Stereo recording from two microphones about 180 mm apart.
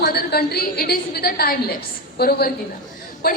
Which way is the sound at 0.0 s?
60° left (ahead or behind).